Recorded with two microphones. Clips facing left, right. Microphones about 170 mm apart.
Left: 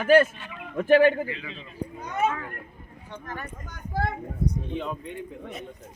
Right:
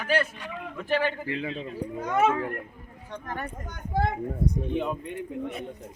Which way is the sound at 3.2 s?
55° right (ahead or behind).